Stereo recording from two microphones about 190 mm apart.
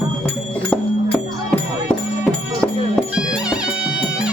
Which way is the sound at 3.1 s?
5° right (ahead or behind).